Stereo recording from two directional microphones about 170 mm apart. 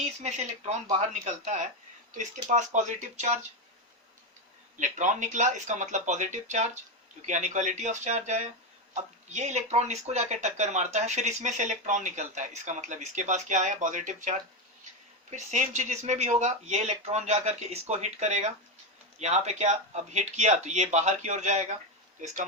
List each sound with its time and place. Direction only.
0.0 s speech: 40° right (ahead or behind)
4.8 s speech: 45° right (ahead or behind)